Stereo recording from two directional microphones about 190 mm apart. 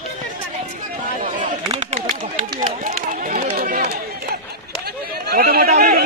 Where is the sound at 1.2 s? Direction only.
40° right (ahead or behind).